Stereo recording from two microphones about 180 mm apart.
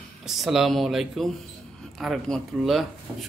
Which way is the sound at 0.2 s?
Centre (ahead or behind).